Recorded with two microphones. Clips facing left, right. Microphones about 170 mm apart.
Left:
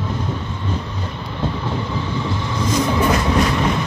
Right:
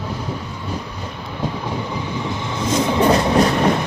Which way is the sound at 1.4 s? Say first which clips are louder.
Left 1 dB; 15° right (ahead or behind).